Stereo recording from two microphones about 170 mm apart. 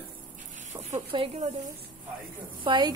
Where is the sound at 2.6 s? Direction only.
30° right (ahead or behind).